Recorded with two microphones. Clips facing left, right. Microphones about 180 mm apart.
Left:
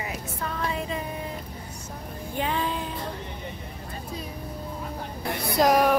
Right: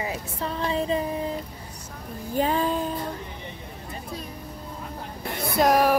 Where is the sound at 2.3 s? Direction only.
40° right (ahead or behind).